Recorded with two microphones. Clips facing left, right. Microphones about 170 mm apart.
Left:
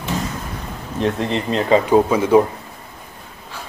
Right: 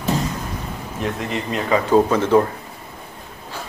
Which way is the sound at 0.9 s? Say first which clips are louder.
Left 5 dB; 30° left (ahead or behind).